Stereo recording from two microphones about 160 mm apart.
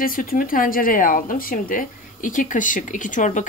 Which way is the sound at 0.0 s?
60° left (ahead or behind).